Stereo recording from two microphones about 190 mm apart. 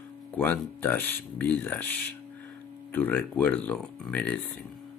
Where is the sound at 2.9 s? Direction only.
10° left (ahead or behind).